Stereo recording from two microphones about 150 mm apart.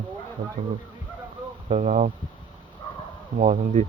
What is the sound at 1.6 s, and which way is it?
Speech, 55° right (ahead or behind).